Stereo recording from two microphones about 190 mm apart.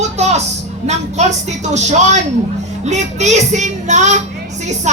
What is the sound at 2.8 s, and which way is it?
A woman's voice, 35° right (ahead or behind).